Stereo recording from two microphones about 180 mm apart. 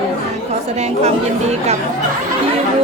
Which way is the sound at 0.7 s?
35° right (ahead or behind).